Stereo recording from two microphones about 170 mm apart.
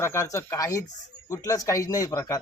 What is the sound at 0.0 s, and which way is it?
A man's voice, 15° left (ahead or behind).